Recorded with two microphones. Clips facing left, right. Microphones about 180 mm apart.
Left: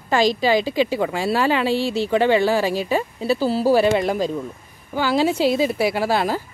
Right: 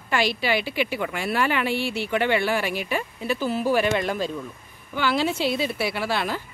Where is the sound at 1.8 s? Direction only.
15° right (ahead or behind).